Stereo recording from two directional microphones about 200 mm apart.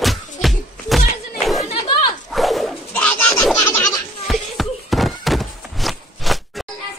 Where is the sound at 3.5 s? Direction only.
15° left (ahead or behind).